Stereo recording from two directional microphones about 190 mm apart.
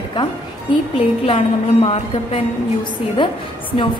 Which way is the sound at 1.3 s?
35° left (ahead or behind).